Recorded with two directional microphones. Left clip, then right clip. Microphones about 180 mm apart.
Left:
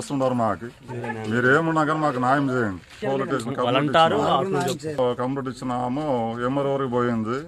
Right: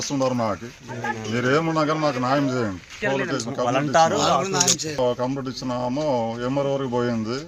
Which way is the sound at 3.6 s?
65° left (ahead or behind).